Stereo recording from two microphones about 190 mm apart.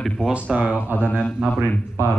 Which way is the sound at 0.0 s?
Centre (ahead or behind).